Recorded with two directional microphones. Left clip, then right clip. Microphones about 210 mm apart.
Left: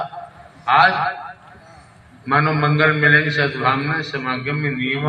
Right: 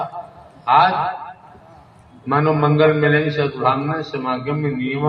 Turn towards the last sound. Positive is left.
turn(degrees=15)  # may be behind; listen again after turning